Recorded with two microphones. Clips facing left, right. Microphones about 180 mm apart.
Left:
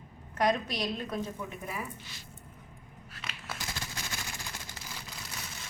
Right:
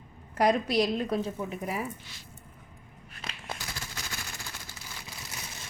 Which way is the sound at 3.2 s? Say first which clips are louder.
Right 3 dB; 30° right (ahead or behind).